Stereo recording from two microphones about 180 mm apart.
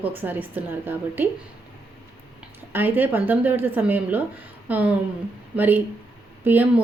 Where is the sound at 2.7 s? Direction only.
10° right (ahead or behind).